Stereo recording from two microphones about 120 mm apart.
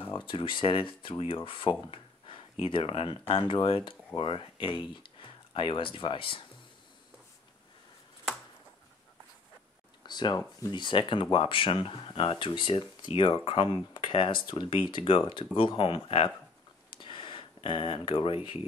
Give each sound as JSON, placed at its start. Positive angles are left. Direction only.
{"t": 0.0, "sound": "speech", "side_deg": 40}
{"t": 10.0, "sound": "speech", "side_deg": 35}
{"t": 16.9, "sound": "a sound", "side_deg": 40}